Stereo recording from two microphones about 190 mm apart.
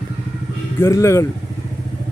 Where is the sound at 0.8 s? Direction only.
15° left (ahead or behind).